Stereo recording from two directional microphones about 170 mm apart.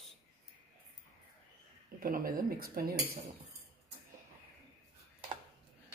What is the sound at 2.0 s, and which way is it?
Speech, 60° right (ahead or behind).